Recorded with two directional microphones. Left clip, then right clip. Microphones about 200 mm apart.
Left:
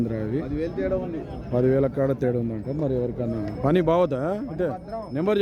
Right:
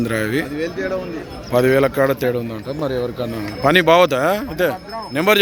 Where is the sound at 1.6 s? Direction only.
10° right (ahead or behind).